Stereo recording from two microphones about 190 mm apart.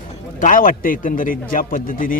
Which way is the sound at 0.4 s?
45° left (ahead or behind).